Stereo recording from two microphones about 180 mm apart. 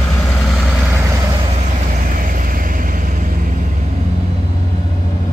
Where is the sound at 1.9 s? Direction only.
50° right (ahead or behind).